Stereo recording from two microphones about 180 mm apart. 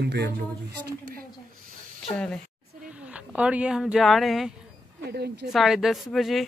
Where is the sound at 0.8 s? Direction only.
55° right (ahead or behind).